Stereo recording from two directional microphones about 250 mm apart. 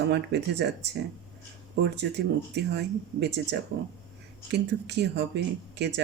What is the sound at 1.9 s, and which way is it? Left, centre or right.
Speech, right.